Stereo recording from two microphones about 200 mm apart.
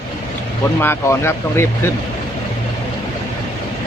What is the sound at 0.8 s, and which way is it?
Speech, 10° left (ahead or behind).